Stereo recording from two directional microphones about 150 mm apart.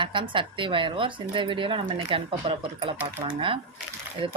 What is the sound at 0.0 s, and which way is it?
Speech, 35° right (ahead or behind).